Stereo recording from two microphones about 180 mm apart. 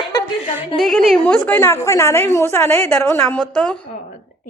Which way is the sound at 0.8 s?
Centre (ahead or behind).